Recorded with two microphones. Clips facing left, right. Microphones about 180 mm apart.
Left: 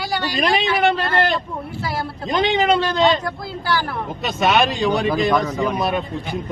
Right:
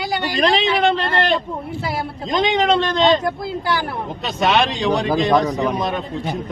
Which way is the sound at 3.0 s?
20° right (ahead or behind).